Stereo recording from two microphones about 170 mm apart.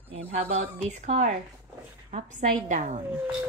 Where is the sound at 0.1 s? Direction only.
35° right (ahead or behind).